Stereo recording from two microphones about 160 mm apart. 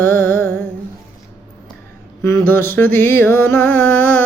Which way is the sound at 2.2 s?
15° left (ahead or behind).